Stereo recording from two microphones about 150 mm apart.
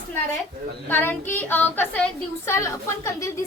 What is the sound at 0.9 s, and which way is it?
A woman's voice, 15° left (ahead or behind).